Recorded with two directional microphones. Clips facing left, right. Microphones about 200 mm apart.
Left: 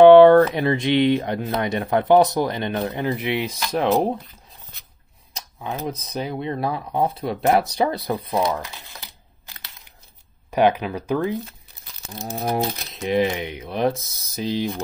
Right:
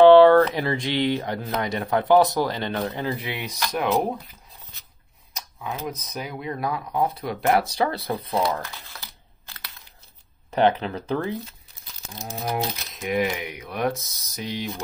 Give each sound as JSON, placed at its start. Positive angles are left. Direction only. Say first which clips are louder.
{"t": 0.0, "sound": "a sound", "louder": "left 3 dB", "side_deg": 20}
{"t": 0.6, "sound": "speech", "louder": "left 5 dB", "side_deg": 20}
{"t": 5.3, "sound": "speech", "louder": "left 3 dB", "side_deg": 30}
{"t": 12.3, "sound": "crumpling", "louder": "left 4 dB", "side_deg": 50}
{"t": 12.9, "sound": "speech", "louder": "left 4 dB", "side_deg": 30}